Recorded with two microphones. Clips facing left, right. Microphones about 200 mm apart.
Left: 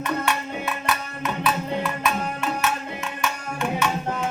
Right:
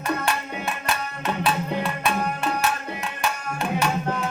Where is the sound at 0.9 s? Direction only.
30° right (ahead or behind).